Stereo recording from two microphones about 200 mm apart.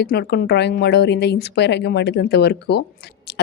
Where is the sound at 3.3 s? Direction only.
55° left (ahead or behind).